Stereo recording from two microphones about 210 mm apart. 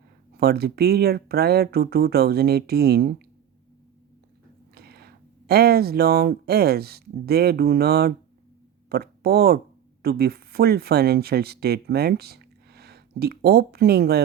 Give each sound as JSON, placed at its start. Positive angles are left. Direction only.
{"t": 0.3, "sound": "speech", "side_deg": -50}
{"t": 4.7, "sound": "speech", "side_deg": -50}